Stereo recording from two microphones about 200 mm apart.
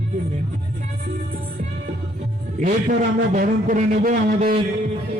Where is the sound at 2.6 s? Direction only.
40° right (ahead or behind).